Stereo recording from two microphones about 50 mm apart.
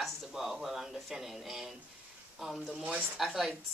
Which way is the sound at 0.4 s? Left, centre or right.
Centre.